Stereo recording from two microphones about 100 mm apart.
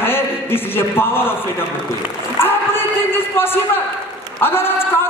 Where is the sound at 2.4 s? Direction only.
20° left (ahead or behind).